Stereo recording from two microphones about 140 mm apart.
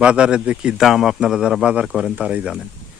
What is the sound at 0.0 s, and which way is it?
A man's voice, 5° right (ahead or behind).